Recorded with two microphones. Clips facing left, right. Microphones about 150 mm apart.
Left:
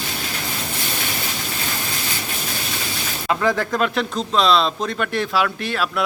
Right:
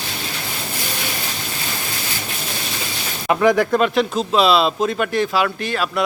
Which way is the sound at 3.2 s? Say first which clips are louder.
Right 5 dB; 15° right (ahead or behind).